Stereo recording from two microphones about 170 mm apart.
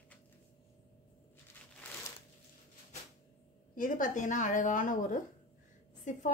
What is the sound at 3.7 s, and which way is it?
A woman's voice, 50° left (ahead or behind).